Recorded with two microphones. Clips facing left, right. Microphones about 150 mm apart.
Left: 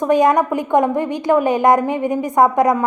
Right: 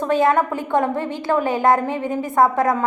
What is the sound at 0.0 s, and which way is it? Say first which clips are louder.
A woman's voice: left 3 dB; 15° left (ahead or behind).